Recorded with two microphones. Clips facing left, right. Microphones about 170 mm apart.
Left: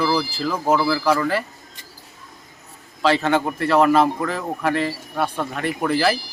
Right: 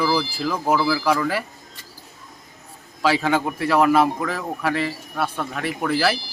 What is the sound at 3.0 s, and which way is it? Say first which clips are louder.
A man's voice: left 1 dB; 5° right (ahead or behind).